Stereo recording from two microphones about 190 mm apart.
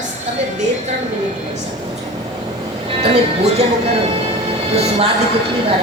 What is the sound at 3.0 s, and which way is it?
Speech, 30° right (ahead or behind).